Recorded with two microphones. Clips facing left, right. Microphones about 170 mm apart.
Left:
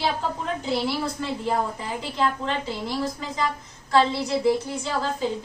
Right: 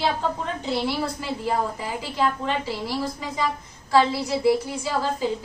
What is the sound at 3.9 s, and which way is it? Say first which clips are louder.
Speech: right 1 dB; 5° right (ahead or behind).